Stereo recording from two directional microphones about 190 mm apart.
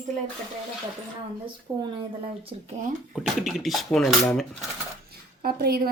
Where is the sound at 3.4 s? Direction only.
Centre (ahead or behind).